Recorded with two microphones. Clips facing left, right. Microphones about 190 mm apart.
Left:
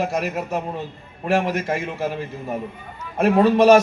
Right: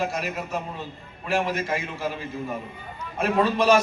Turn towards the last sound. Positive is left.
turn(degrees=65)  # may be behind; listen again after turning